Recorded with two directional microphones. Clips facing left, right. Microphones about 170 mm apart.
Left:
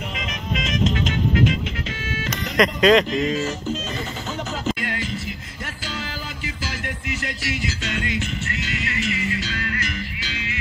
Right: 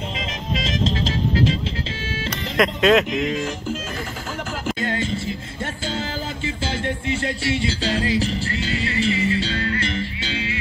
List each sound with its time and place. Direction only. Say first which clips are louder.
0.2 s music: even; 30° right (ahead or behind)
2.5 s speech: left 1 dB; centre (ahead or behind)
3.2 s music: left 1 dB; centre (ahead or behind)
4.7 s music: right 4 dB; 25° right (ahead or behind)